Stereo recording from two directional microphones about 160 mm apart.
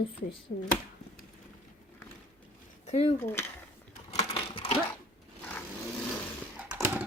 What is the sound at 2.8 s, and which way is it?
Speech, 40° left (ahead or behind).